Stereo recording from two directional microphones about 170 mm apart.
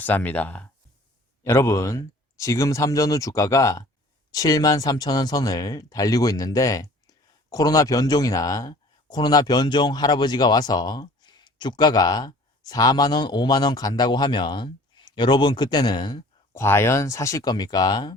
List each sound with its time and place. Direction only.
0.0 s speech: 10° left (ahead or behind); by 16.6 s 25° left (ahead or behind)
16.6 s speech: 15° left (ahead or behind)